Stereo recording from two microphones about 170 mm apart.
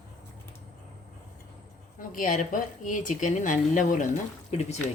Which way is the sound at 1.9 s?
55° left (ahead or behind).